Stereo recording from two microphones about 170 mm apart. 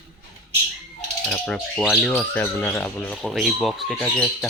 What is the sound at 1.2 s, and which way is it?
Mechanisms, 5° left (ahead or behind).